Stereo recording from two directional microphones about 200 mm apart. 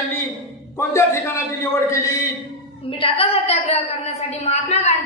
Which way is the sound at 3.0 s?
30° left (ahead or behind).